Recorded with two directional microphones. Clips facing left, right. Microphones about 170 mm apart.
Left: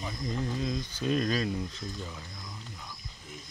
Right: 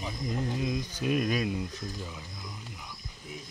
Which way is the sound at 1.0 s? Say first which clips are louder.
Even; 10° right (ahead or behind).